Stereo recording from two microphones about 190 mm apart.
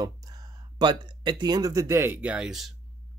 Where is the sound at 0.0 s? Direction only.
20° right (ahead or behind).